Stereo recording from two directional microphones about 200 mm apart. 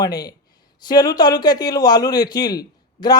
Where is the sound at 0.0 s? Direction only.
20° left (ahead or behind).